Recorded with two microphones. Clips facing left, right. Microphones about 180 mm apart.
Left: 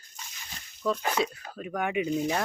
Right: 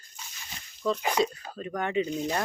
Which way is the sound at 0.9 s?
10° right (ahead or behind).